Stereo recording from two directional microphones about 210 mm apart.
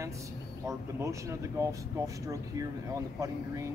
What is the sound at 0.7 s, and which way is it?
Speech, 15° right (ahead or behind).